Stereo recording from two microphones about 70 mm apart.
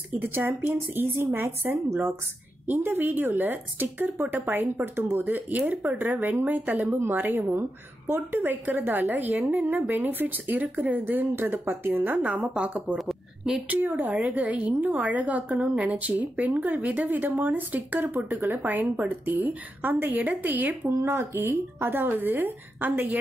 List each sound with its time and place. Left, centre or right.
0.2 s a woman's voice: right
12.9 s a sound: centre
13.7 s a woman's voice: right
20.8 s speech: right